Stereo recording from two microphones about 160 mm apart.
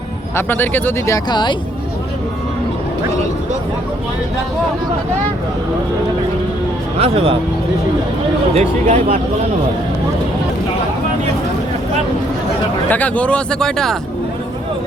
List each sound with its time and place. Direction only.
0.3 s speech: 15° left (ahead or behind)
7.0 s speech: 35° right (ahead or behind)
8.5 s speech: 50° right (ahead or behind)
12.9 s speech: 10° left (ahead or behind)